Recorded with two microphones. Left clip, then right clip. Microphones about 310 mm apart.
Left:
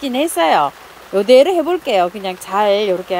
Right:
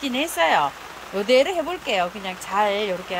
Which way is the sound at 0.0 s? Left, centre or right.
Centre.